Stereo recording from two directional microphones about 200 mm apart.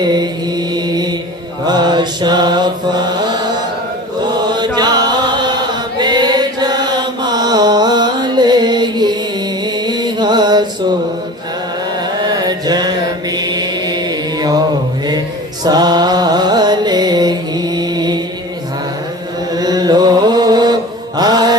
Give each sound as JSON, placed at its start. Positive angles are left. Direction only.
{"t": 0.0, "sound": "chant", "side_deg": -20}
{"t": 1.6, "sound": "mantra", "side_deg": -20}
{"t": 4.2, "sound": "chant", "side_deg": -20}
{"t": 11.9, "sound": "chant", "side_deg": -20}
{"t": 15.6, "sound": "music", "side_deg": -20}
{"t": 19.5, "sound": "mantra", "side_deg": -20}